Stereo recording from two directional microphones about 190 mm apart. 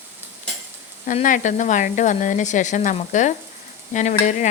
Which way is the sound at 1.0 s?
45° left (ahead or behind).